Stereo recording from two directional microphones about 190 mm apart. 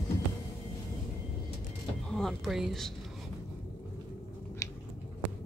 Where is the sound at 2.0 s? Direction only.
Centre (ahead or behind).